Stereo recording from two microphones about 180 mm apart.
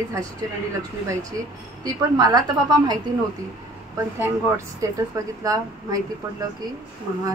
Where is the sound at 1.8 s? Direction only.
20° right (ahead or behind).